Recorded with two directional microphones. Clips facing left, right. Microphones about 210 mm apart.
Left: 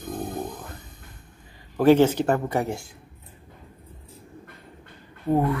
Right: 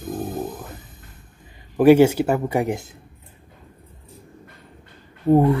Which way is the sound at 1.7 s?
10° right (ahead or behind).